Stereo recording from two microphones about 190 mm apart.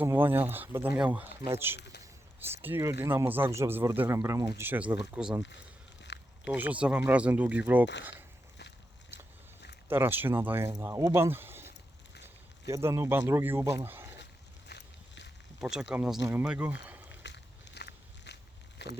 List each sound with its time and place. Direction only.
0.0 s speech: 10° right (ahead or behind)
6.1 s a sound: 65° left (ahead or behind)
6.4 s speech: 5° right (ahead or behind)
8.1 s a sound: 65° left (ahead or behind)
9.9 s speech: 10° right (ahead or behind)
12.6 s speech: 15° right (ahead or behind)
14.7 s vehicle: 65° left (ahead or behind)
15.6 s speech: 5° right (ahead or behind)
17.2 s biting: 65° left (ahead or behind)
18.8 s speech: 65° left (ahead or behind)